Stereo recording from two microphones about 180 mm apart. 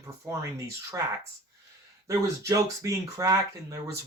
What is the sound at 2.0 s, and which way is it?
Speech, 15° right (ahead or behind).